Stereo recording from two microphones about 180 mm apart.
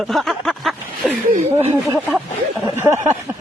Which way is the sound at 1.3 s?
40° right (ahead or behind).